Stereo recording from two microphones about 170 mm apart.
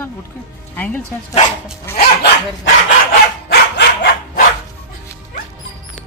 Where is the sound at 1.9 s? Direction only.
65° left (ahead or behind).